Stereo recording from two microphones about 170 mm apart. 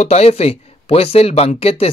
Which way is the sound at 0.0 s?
40° left (ahead or behind).